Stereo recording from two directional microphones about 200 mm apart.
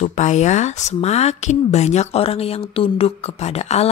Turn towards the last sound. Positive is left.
turn(degrees=30)  # may be behind; listen again after turning